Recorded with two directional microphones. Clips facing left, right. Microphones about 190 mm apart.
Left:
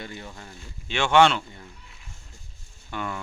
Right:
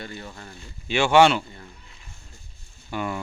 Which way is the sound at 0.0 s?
15° left (ahead or behind).